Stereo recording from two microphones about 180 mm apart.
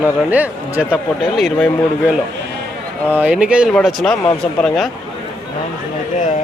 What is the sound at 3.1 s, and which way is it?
A man's voice, 10° right (ahead or behind).